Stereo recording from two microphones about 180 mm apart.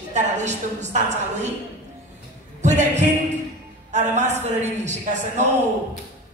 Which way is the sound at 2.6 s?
40° right (ahead or behind).